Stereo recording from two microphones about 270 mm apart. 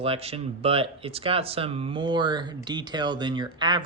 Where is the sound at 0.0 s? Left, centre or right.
Right.